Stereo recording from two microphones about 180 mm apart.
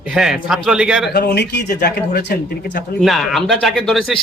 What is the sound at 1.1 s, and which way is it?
Speech, 65° left (ahead or behind).